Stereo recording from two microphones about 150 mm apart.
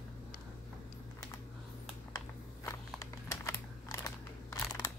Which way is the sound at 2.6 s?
20° left (ahead or behind).